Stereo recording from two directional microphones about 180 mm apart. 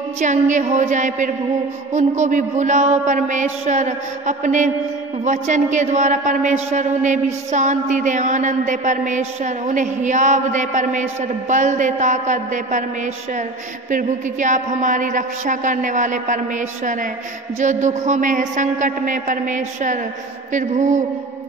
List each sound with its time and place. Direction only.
0.2 s a man's voice: 40° right (ahead or behind)
13.8 s a man's voice: 45° right (ahead or behind)
17.6 s a man's voice: 45° right (ahead or behind)